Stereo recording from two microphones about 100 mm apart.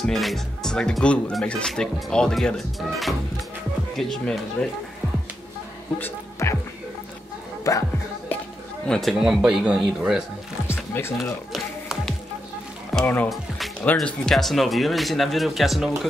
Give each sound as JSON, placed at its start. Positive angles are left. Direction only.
{"t": 0.0, "sound": "speech", "side_deg": 0}
{"t": 5.9, "sound": "music", "side_deg": 25}
{"t": 7.7, "sound": "speech", "side_deg": 35}
{"t": 8.8, "sound": "speech", "side_deg": 5}
{"t": 9.2, "sound": "speech", "side_deg": -10}
{"t": 10.7, "sound": "music", "side_deg": 25}
{"t": 11.5, "sound": "music", "side_deg": 0}
{"t": 13.0, "sound": "speech", "side_deg": 20}
{"t": 14.0, "sound": "speech", "side_deg": 5}